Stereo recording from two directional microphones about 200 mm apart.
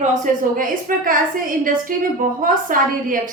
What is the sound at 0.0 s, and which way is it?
A woman's voice, 40° right (ahead or behind).